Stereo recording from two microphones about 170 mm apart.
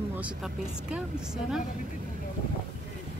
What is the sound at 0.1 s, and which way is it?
Speech, 5° right (ahead or behind).